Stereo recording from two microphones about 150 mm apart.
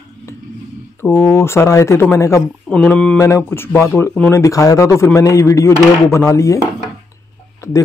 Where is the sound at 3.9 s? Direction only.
15° left (ahead or behind).